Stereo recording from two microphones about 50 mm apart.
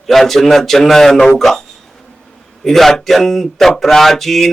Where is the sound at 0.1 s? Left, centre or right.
Centre.